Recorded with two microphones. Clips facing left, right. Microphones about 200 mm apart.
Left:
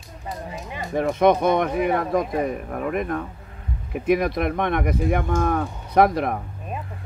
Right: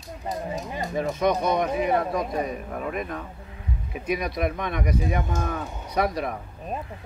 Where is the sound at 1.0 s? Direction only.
55° left (ahead or behind).